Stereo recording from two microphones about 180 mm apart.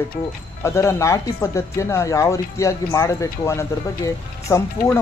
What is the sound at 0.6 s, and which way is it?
Speech, 15° left (ahead or behind).